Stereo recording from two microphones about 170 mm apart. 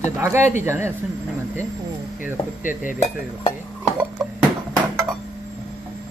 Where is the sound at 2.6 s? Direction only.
50° left (ahead or behind).